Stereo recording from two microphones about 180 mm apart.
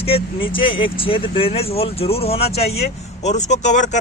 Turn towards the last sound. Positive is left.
turn(degrees=40)  # may be behind; listen again after turning